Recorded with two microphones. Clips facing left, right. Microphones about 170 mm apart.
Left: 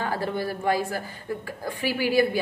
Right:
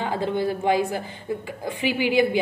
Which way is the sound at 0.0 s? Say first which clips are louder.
Right 3 dB; 20° right (ahead or behind).